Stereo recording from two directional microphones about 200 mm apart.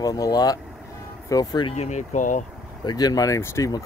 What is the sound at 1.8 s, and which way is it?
Speech, 35° left (ahead or behind).